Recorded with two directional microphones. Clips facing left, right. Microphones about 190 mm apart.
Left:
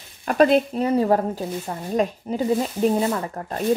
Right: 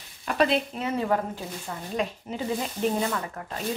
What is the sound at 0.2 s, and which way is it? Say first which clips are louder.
Speech: left 7 dB; 45° left (ahead or behind).